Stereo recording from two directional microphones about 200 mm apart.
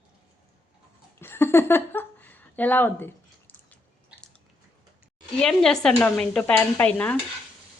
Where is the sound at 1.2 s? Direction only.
10° left (ahead or behind).